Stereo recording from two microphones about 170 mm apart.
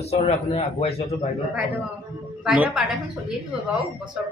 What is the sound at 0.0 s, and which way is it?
A man's voice, 35° left (ahead or behind).